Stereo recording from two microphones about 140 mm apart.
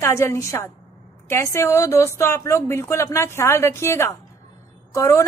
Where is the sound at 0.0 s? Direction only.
20° left (ahead or behind).